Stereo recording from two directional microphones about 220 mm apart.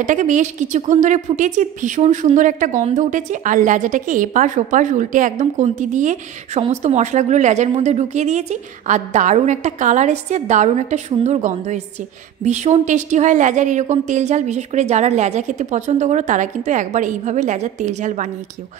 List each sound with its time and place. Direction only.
0.0 s a woman's voice: 35° right (ahead or behind)